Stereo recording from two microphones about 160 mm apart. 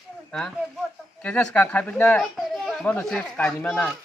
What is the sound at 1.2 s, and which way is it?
A child's voice, 10° left (ahead or behind).